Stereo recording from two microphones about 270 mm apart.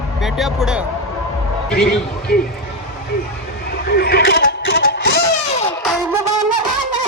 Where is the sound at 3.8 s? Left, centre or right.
Left.